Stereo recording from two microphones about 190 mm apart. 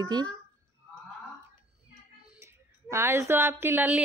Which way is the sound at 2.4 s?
15° right (ahead or behind).